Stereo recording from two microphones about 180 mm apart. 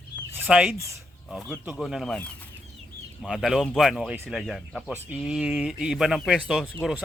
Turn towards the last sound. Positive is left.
turn(degrees=-5)  # may be behind; listen again after turning